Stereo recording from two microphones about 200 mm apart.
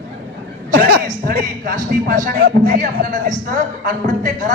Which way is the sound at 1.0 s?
45° right (ahead or behind).